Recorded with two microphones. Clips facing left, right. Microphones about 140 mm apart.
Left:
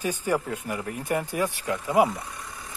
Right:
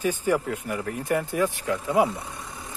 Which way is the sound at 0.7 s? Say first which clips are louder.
Right 1 dB; 25° left (ahead or behind).